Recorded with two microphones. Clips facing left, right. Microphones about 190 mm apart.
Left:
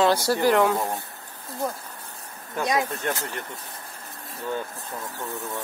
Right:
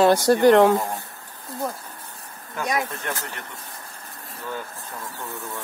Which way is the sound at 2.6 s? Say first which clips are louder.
Left 2 dB; 25° left (ahead or behind).